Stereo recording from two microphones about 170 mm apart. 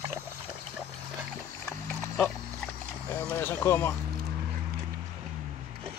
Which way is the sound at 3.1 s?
15° left (ahead or behind).